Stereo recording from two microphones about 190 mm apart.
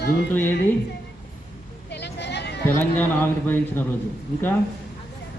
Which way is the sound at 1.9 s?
60° left (ahead or behind).